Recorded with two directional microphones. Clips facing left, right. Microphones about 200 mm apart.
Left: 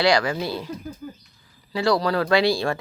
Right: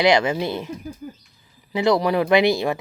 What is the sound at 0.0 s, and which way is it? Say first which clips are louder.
Speech: right 3 dB; 20° right (ahead or behind).